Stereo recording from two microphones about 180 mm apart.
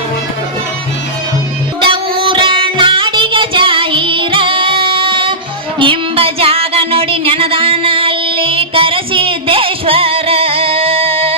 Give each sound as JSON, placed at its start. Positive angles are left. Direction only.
{"t": 1.8, "sound": "child singing", "side_deg": -25}
{"t": 5.8, "sound": "music", "side_deg": -30}